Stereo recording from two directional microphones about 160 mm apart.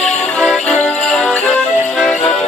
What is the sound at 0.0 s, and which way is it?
Music, 5° left (ahead or behind).